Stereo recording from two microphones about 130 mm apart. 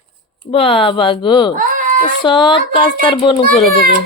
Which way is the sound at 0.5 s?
45° left (ahead or behind).